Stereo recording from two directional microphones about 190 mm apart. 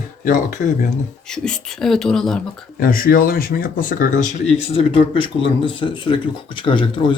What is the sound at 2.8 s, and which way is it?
Speech, 50° left (ahead or behind).